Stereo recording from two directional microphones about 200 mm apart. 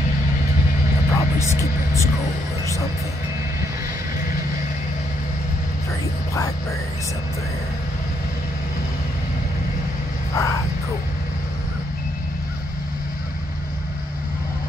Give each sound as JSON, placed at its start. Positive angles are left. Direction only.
{"t": 1.1, "sound": "music", "side_deg": 15}
{"t": 10.3, "sound": "vehicle", "side_deg": 15}